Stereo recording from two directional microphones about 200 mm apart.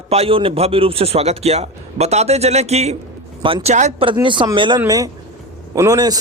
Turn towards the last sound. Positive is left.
turn(degrees=-20)  # may be behind; listen again after turning